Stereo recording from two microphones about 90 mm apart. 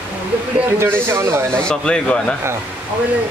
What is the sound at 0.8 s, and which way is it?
Speech, 30° right (ahead or behind).